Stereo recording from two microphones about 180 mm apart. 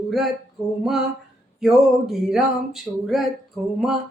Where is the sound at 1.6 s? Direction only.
Centre (ahead or behind).